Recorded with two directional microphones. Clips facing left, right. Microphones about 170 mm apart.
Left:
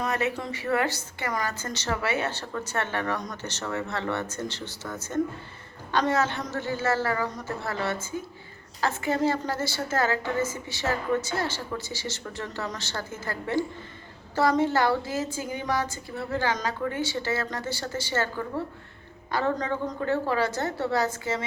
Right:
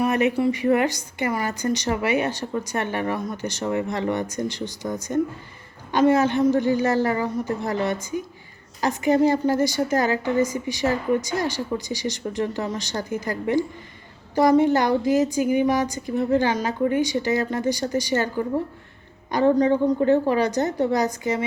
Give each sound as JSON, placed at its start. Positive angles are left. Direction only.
{"t": 0.0, "sound": "a woman's voice", "side_deg": -15}